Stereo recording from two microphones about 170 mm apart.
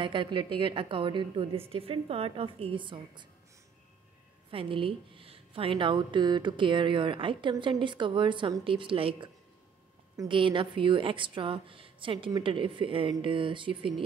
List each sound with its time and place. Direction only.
0.0 s a woman's voice: 30° right (ahead or behind)
4.5 s a woman's voice: 30° right (ahead or behind)